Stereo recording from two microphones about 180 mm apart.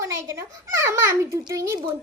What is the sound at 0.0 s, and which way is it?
A child's voice, 15° right (ahead or behind).